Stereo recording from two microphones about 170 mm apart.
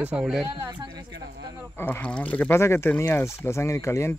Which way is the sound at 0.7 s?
25° right (ahead or behind).